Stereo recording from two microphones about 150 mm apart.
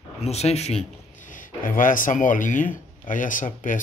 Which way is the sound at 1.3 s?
65° left (ahead or behind).